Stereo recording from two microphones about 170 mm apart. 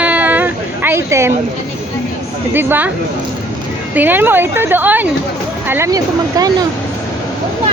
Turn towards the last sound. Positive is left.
turn(degrees=-20)  # may be behind; listen again after turning